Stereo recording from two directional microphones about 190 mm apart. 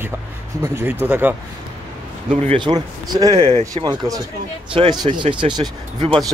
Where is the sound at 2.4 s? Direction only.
30° right (ahead or behind).